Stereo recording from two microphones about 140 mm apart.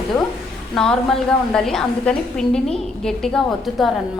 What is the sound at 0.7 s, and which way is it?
A woman's voice, 5° left (ahead or behind).